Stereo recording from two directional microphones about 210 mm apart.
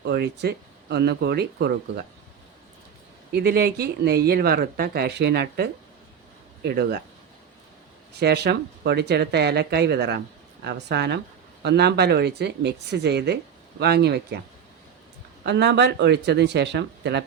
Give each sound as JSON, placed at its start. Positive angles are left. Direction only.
{"t": 0.0, "sound": "speech", "side_deg": -50}
{"t": 3.3, "sound": "speech", "side_deg": -50}
{"t": 8.2, "sound": "speech", "side_deg": -50}
{"t": 15.4, "sound": "speech", "side_deg": -55}